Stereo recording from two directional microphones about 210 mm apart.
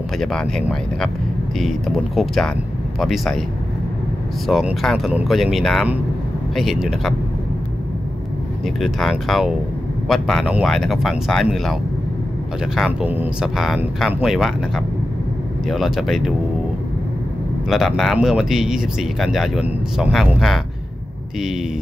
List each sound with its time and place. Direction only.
0.2 s speech: centre (ahead or behind)
4.5 s speech: centre (ahead or behind)
8.6 s speech: centre (ahead or behind)
15.6 s speech: centre (ahead or behind)
17.6 s speech: centre (ahead or behind)